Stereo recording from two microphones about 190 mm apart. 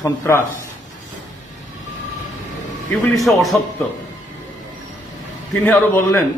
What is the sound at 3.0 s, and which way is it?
Speech, centre (ahead or behind).